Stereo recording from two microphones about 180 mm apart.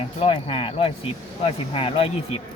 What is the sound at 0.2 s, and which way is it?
Speech, 30° left (ahead or behind).